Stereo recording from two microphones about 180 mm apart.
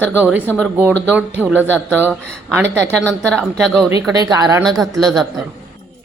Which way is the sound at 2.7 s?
5° left (ahead or behind).